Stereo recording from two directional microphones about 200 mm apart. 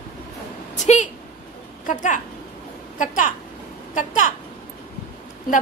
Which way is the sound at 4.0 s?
40° left (ahead or behind).